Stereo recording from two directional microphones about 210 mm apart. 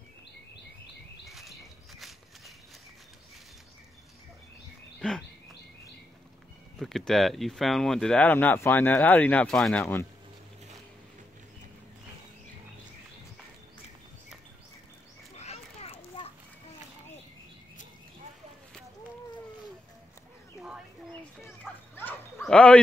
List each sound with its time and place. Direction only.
1.3 s walk: centre (ahead or behind)
5.0 s speech: 5° left (ahead or behind)
6.8 s speech: centre (ahead or behind)
15.3 s children playing: 30° left (ahead or behind)
21.9 s bow-wow: 10° left (ahead or behind)